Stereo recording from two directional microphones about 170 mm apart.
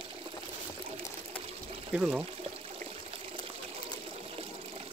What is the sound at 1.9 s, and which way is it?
Speech, 10° right (ahead or behind).